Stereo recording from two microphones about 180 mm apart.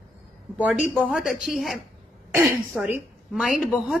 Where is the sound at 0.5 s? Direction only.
10° right (ahead or behind).